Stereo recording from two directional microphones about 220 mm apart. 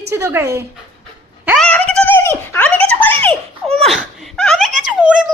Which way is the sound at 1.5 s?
5° left (ahead or behind).